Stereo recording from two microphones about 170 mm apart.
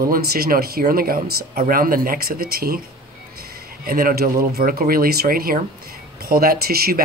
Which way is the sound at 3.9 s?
60° right (ahead or behind).